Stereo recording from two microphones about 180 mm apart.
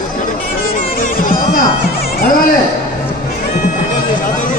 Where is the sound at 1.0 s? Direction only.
50° left (ahead or behind).